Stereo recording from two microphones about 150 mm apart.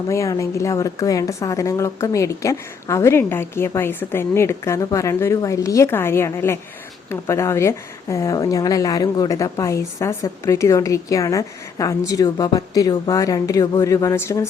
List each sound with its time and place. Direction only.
0.1 s a woman's voice: 20° left (ahead or behind)